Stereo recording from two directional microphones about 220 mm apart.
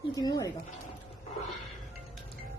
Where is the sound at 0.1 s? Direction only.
15° left (ahead or behind).